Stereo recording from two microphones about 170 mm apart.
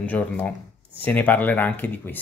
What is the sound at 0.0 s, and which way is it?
Speech, 10° left (ahead or behind).